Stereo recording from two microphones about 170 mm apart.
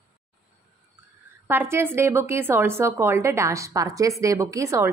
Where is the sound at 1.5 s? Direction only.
15° right (ahead or behind).